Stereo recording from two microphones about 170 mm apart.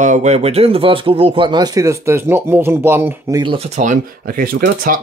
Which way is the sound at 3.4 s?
35° right (ahead or behind).